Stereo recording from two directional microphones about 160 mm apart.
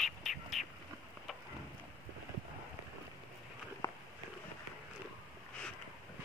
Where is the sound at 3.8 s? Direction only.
20° left (ahead or behind).